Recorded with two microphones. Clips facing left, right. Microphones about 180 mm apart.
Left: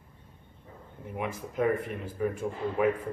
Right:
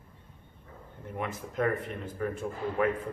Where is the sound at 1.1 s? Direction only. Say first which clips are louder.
Left 1 dB; 5° left (ahead or behind).